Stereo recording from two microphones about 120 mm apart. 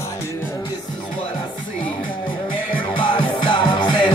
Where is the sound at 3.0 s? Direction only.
45° left (ahead or behind).